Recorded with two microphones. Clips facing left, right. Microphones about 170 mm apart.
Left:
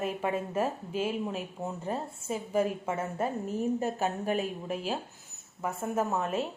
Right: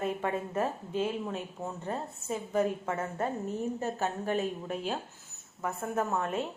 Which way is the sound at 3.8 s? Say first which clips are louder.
Left 2 dB; 15° left (ahead or behind).